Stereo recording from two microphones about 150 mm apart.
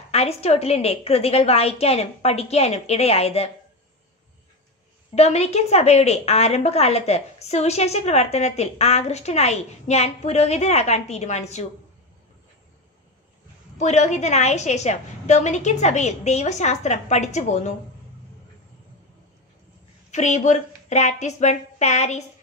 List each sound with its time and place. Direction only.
0.1 s a woman's voice: 45° left (ahead or behind)
5.1 s a woman's voice: 45° left (ahead or behind)
13.7 s a woman's voice: 50° left (ahead or behind)
20.1 s a woman's voice: 50° left (ahead or behind)